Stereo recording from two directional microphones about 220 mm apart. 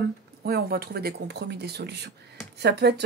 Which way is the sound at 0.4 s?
45° right (ahead or behind).